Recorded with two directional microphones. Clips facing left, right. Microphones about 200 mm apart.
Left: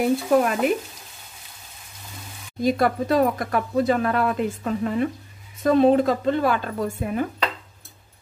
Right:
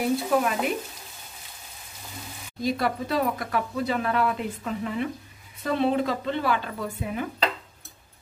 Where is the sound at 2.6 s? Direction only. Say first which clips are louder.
Left 5 dB; 50° left (ahead or behind).